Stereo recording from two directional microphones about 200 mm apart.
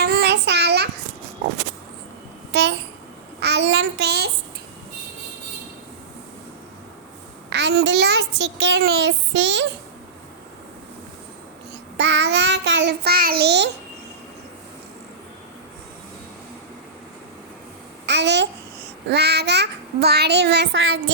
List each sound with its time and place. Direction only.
0.0 s child singing: 55° right (ahead or behind)
2.5 s a sound: 60° right (ahead or behind)
3.4 s child singing: 60° right (ahead or behind)
7.5 s a child's voice: 60° right (ahead or behind)
11.9 s child singing: 60° right (ahead or behind)
18.0 s babbling: 60° right (ahead or behind)
19.0 s child singing: 55° right (ahead or behind)